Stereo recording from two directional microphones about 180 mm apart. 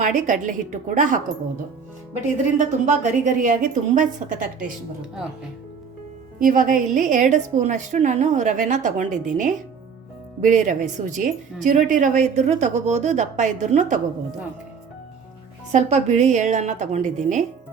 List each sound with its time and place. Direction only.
0.0 s a woman's voice: 45° right (ahead or behind)
2.2 s a woman's voice: 40° right (ahead or behind)
6.4 s a woman's voice: 45° right (ahead or behind)
15.7 s a woman's voice: 40° right (ahead or behind)